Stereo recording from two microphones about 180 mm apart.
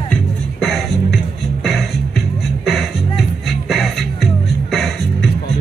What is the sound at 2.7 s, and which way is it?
Music, centre (ahead or behind).